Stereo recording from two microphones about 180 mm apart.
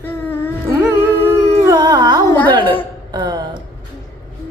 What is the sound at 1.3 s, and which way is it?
Carnatic music, 20° right (ahead or behind).